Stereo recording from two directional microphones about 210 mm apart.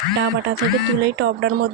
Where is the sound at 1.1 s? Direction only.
55° right (ahead or behind).